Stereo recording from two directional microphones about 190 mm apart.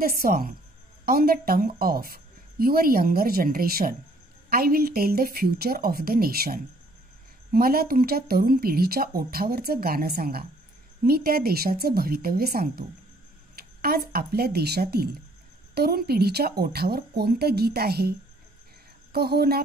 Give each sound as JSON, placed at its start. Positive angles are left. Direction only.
{"t": 0.2, "sound": "speech", "side_deg": -50}
{"t": 19.1, "sound": "speech", "side_deg": -55}